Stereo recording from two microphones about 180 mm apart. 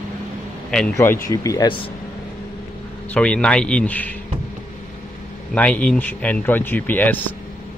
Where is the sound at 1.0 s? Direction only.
15° left (ahead or behind).